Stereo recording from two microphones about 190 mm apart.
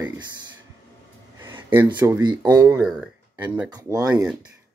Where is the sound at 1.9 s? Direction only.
10° right (ahead or behind).